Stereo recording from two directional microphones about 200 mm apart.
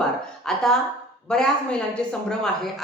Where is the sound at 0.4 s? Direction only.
5° left (ahead or behind).